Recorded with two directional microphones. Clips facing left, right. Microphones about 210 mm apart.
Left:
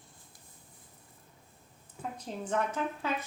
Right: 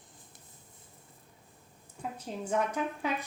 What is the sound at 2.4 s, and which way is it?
Speech, 10° right (ahead or behind).